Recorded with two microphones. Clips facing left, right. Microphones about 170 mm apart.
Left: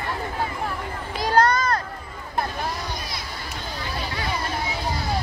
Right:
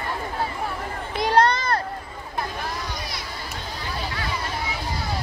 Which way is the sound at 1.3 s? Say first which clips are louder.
Even; 30° right (ahead or behind).